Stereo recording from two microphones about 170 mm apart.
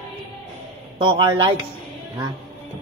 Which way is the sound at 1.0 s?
30° right (ahead or behind).